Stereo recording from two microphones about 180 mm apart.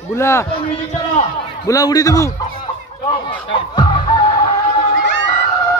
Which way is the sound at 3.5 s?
25° left (ahead or behind).